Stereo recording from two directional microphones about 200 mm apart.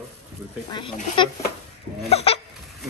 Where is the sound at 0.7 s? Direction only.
25° left (ahead or behind).